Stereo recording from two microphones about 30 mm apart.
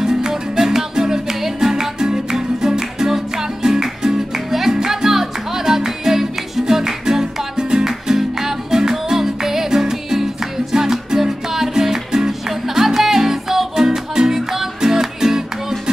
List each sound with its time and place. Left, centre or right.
0.0 s music: centre
4.5 s music: centre